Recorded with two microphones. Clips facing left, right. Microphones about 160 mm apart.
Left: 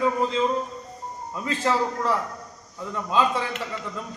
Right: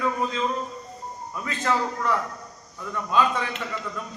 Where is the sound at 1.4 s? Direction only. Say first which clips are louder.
Left 2 dB; 30° left (ahead or behind).